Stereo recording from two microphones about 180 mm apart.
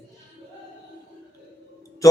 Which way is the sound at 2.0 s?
20° left (ahead or behind).